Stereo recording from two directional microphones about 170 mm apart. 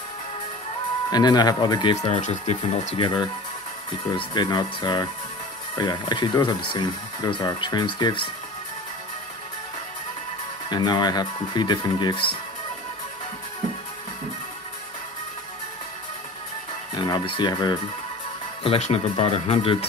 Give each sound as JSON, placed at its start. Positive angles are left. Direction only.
{"t": 1.1, "sound": "speech", "side_deg": 25}
{"t": 2.0, "sound": "speech", "side_deg": 45}
{"t": 3.0, "sound": "speech", "side_deg": 25}
{"t": 10.7, "sound": "speech", "side_deg": 25}
{"t": 16.9, "sound": "speech", "side_deg": 25}